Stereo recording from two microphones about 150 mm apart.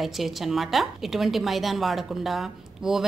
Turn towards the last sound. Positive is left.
turn(degrees=0)  # may be behind; listen again after turning